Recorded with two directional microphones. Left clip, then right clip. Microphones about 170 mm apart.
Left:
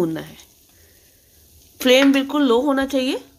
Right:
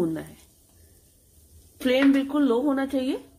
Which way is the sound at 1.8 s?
35° left (ahead or behind).